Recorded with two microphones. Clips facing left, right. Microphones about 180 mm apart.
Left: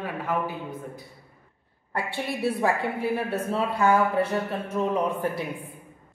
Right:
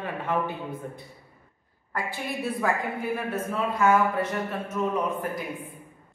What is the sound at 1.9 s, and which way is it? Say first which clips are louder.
A woman's voice: left 2 dB; 30° left (ahead or behind).